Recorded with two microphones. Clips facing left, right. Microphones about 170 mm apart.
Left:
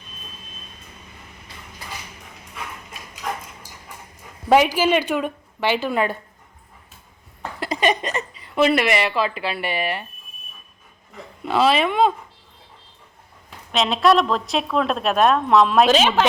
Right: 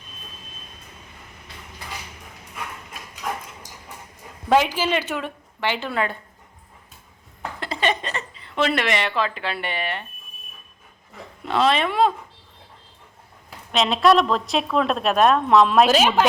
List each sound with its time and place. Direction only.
4.4 s a woman's voice: 15° left (ahead or behind)
7.6 s a woman's voice: 15° left (ahead or behind)
11.4 s a woman's voice: 5° left (ahead or behind)
13.7 s a woman's voice: centre (ahead or behind)